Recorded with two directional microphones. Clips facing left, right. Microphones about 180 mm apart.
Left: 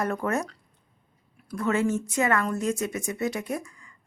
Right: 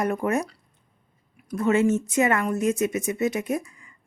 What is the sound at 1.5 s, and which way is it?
A woman's voice, 20° right (ahead or behind).